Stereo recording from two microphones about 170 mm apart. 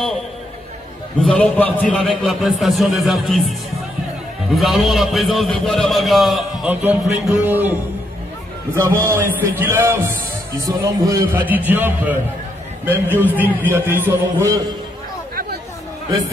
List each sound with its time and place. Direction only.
1.2 s a man's voice: 5° left (ahead or behind)
4.6 s a man's voice: centre (ahead or behind)
8.7 s a man's voice: 15° right (ahead or behind)
11.3 s a man's voice: 10° right (ahead or behind)